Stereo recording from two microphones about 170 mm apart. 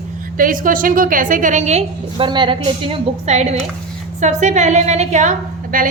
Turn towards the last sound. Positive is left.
turn(degrees=-50)  # may be behind; listen again after turning